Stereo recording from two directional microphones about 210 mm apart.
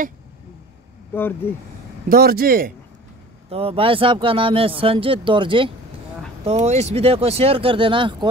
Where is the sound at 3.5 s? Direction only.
25° right (ahead or behind).